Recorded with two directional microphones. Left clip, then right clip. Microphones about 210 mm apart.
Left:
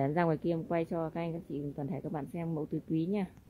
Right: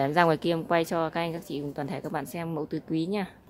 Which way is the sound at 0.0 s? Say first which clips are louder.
Right 8 dB; 5° right (ahead or behind).